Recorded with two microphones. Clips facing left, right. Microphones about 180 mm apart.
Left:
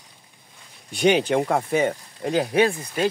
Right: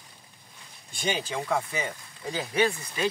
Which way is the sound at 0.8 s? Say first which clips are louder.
Left 12 dB; 70° left (ahead or behind).